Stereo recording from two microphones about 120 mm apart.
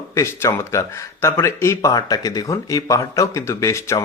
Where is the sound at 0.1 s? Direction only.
25° left (ahead or behind).